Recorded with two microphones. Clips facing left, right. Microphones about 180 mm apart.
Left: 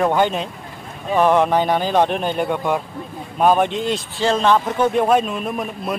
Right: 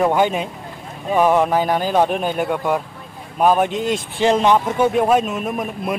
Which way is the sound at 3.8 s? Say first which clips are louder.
Right 1 dB; 50° right (ahead or behind).